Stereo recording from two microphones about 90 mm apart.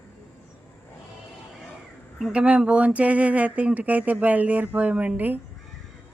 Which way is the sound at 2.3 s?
10° right (ahead or behind).